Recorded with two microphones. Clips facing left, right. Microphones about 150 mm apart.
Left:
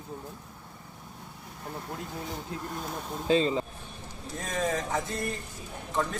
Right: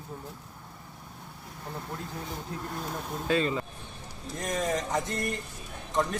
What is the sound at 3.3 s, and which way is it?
Speech, 25° left (ahead or behind).